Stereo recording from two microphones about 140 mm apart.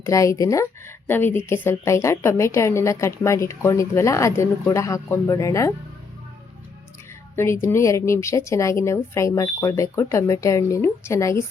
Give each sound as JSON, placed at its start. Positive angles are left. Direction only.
{"t": 0.0, "sound": "a woman's voice", "side_deg": 20}
{"t": 7.3, "sound": "a woman's voice", "side_deg": 20}